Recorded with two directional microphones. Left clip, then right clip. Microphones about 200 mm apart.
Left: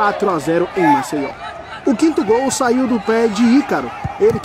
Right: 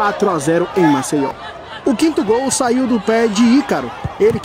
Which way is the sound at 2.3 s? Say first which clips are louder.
Even; 40° right (ahead or behind).